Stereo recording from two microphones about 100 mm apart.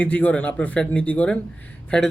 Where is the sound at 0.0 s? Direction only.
15° left (ahead or behind).